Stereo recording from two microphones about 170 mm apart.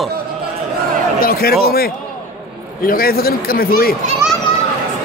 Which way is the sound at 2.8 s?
60° left (ahead or behind).